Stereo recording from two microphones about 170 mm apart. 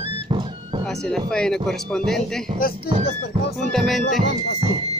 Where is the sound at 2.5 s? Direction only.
60° left (ahead or behind).